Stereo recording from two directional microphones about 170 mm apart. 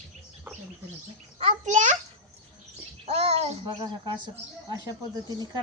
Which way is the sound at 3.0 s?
40° right (ahead or behind).